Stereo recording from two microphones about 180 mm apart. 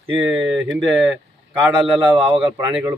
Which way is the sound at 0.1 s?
Centre (ahead or behind).